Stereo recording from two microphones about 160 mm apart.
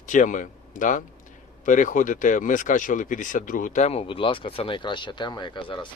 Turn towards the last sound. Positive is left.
turn(degrees=30)  # may be behind; listen again after turning